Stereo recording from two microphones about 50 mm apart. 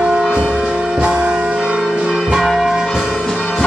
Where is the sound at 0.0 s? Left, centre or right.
Centre.